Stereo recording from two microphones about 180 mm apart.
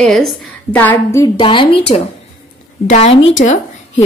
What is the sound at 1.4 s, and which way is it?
A woman's voice, 30° left (ahead or behind).